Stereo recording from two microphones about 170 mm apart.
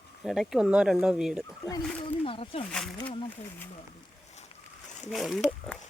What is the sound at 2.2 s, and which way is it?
Speech, 35° left (ahead or behind).